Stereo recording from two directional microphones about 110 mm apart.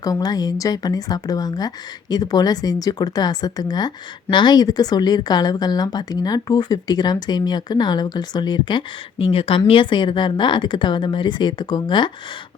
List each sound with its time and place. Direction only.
0.0 s speech: 35° left (ahead or behind)